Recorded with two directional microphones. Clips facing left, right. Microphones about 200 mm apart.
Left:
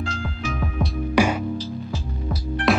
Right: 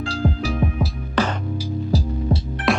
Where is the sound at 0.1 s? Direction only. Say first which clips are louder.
Right 6 dB; 35° right (ahead or behind).